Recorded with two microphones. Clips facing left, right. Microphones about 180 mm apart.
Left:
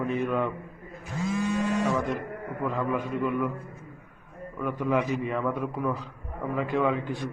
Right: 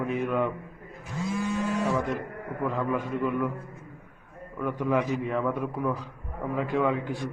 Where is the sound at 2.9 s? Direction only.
15° left (ahead or behind).